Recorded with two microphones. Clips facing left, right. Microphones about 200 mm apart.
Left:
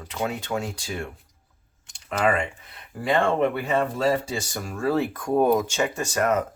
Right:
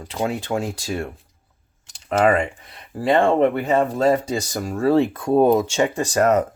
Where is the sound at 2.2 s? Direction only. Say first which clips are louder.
Right 6 dB; 35° right (ahead or behind).